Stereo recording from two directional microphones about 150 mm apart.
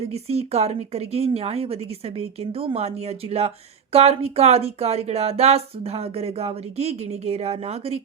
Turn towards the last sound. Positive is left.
turn(degrees=-40)  # may be behind; listen again after turning